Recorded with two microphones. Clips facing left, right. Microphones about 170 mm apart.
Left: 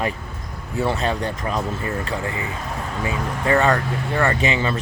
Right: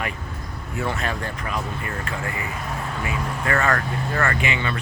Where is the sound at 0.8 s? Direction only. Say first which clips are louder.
Left 5 dB; 30° left (ahead or behind).